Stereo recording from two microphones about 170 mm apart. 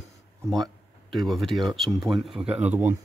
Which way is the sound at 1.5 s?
Centre (ahead or behind).